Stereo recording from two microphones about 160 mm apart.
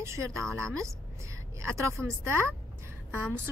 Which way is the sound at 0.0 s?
15° right (ahead or behind).